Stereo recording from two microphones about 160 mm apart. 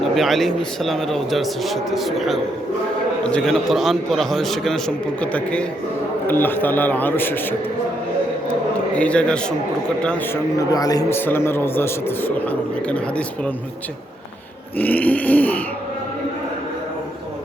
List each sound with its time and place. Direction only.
0.2 s a man's voice: centre (ahead or behind)
9.0 s a man's voice: 5° left (ahead or behind)
10.6 s a man's voice: 25° left (ahead or behind); by 13.5 s 5° left (ahead or behind)
14.8 s a man's voice: 10° left (ahead or behind)